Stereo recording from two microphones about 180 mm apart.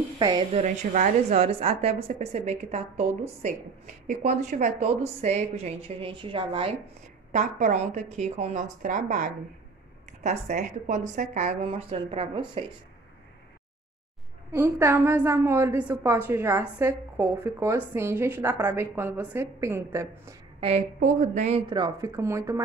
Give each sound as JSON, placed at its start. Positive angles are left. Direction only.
{"t": 0.2, "sound": "speech", "side_deg": -20}
{"t": 0.5, "sound": "a woman's voice", "side_deg": -40}
{"t": 7.3, "sound": "a woman's voice", "side_deg": -45}
{"t": 14.5, "sound": "a woman's voice", "side_deg": -15}
{"t": 21.0, "sound": "speech", "side_deg": -45}